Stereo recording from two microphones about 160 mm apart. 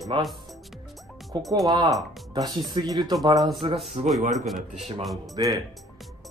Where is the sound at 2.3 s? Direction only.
25° right (ahead or behind).